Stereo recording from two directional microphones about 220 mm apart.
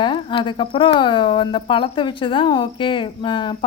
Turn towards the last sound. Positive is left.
turn(degrees=20)  # may be behind; listen again after turning